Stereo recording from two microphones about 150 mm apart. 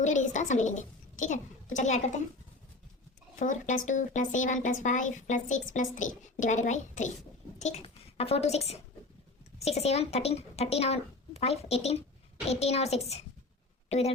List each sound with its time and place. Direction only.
0.0 s a woman's voice: 55° left (ahead or behind)
3.3 s a woman's voice: 60° left (ahead or behind)